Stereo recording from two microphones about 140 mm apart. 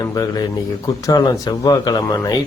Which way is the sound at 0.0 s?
25° left (ahead or behind).